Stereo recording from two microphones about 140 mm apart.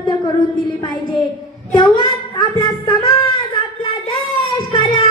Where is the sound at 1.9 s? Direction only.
35° left (ahead or behind).